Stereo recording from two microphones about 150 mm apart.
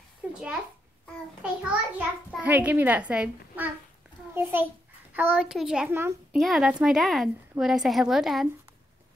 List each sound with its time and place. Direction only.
0.3 s a child's voice: 5° right (ahead or behind)
5.9 s a child's voice: 15° right (ahead or behind)
6.3 s a woman's voice: centre (ahead or behind)